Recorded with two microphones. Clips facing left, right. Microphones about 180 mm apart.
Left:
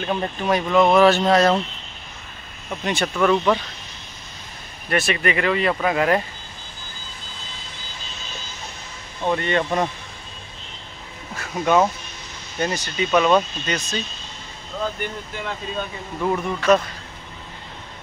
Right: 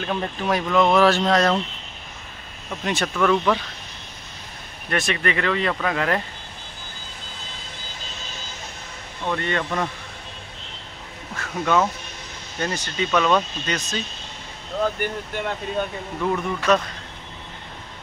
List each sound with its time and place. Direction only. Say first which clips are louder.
0.0 s speech: left 2 dB; 5° left (ahead or behind)
2.7 s speech: left 1 dB; centre (ahead or behind)
4.8 s speech: left 2 dB; 5° left (ahead or behind)
9.2 s speech: left 4 dB; 20° left (ahead or behind)
11.3 s speech: left 3 dB; 15° left (ahead or behind); by 14.0 s centre (ahead or behind)
16.2 s speech: left 1 dB; 5° left (ahead or behind)